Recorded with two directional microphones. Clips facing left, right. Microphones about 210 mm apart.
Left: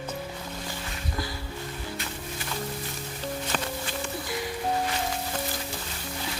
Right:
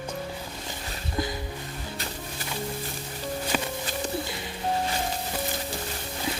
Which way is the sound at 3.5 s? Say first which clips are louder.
Right 4 dB; 5° right (ahead or behind).